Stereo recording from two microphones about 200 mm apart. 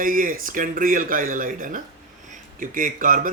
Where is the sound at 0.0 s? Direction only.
45° right (ahead or behind).